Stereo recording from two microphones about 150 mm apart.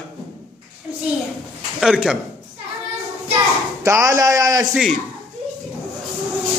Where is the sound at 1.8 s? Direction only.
5° right (ahead or behind).